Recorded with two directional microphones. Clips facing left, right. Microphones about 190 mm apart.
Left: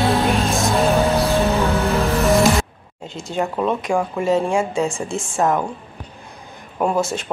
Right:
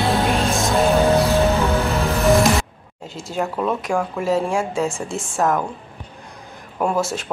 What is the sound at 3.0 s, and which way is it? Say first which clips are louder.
Speech: left 1 dB; centre (ahead or behind).